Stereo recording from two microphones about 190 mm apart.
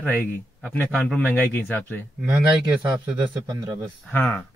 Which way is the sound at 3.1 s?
20° right (ahead or behind).